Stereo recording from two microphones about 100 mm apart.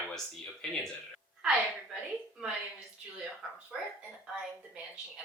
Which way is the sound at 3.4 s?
5° right (ahead or behind).